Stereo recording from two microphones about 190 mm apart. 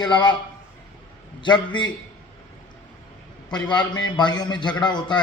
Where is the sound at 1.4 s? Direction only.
25° left (ahead or behind).